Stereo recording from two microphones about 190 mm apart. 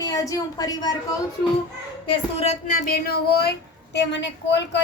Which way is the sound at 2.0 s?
35° left (ahead or behind).